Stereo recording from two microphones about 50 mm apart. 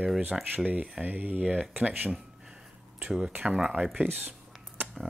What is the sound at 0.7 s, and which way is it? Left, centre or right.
Speech, right.